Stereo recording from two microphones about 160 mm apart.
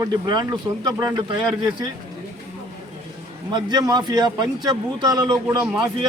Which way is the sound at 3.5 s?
25° right (ahead or behind).